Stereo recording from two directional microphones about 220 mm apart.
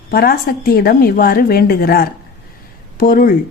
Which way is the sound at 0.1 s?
45° left (ahead or behind).